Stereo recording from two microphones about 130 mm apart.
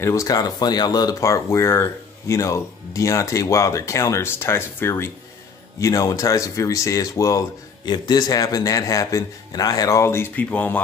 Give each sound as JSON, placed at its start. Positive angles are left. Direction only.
{"t": 0.0, "sound": "speech", "side_deg": 25}